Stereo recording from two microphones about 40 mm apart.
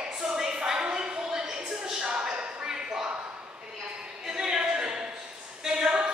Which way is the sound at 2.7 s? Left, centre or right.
Centre.